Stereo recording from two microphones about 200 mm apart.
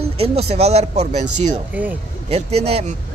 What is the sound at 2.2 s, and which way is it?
Speech, 30° right (ahead or behind).